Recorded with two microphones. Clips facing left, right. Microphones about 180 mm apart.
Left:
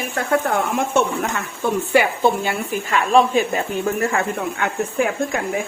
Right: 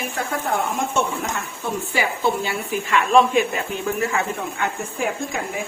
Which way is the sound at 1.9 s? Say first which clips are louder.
Left 5 dB; 55° left (ahead or behind).